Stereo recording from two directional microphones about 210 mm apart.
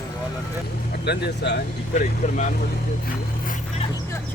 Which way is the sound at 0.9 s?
50° left (ahead or behind).